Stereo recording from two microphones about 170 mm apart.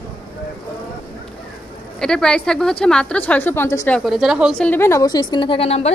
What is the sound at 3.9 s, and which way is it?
A woman's voice, centre (ahead or behind).